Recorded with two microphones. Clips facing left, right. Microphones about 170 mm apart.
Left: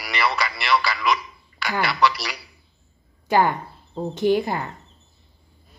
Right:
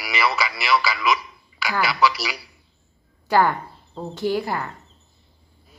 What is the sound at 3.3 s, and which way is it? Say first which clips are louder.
A woman's voice: even; 20° left (ahead or behind).